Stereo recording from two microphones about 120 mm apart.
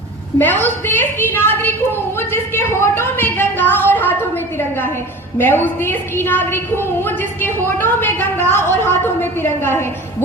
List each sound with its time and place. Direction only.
0.3 s a woman's voice: 15° left (ahead or behind)
2.1 s a sound: 20° left (ahead or behind)
5.4 s a woman's voice: 15° left (ahead or behind)